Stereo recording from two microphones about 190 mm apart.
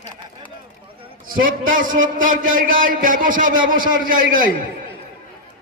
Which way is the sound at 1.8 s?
90° right.